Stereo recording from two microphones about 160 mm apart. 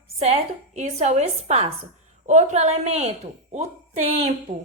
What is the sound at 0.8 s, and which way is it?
A woman's voice, 45° right (ahead or behind).